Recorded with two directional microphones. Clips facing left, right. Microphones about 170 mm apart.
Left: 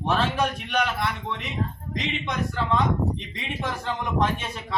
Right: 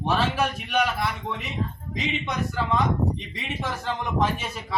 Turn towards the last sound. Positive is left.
turn(degrees=-5)  # may be behind; listen again after turning